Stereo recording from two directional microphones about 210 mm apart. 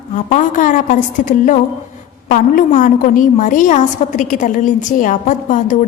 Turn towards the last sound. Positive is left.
turn(degrees=35)  # may be behind; listen again after turning